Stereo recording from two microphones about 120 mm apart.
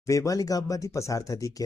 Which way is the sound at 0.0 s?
25° left (ahead or behind).